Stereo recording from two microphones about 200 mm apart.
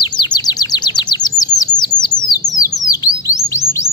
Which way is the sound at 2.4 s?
40° left (ahead or behind).